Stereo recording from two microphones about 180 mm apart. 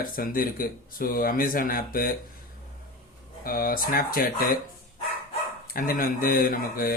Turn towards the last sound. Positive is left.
turn(degrees=55)  # may be behind; listen again after turning